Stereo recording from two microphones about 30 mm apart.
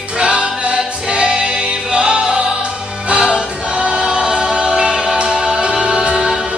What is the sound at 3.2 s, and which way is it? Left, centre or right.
Choir, right.